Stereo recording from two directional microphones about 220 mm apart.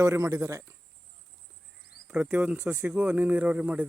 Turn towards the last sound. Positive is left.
turn(degrees=-5)  # may be behind; listen again after turning